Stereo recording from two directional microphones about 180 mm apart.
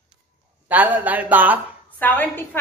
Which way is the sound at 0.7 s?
10° right (ahead or behind).